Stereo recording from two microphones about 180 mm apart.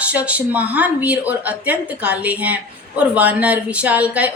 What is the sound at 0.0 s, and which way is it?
Speech, 5° right (ahead or behind).